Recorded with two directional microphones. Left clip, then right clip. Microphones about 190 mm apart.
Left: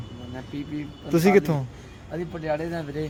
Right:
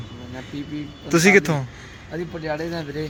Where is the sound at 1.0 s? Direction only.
10° left (ahead or behind).